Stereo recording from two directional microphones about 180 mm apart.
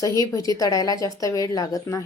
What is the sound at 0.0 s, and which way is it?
A woman's voice, 20° left (ahead or behind).